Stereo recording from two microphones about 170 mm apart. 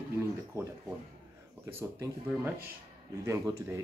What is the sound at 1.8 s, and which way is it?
Speech, 15° right (ahead or behind).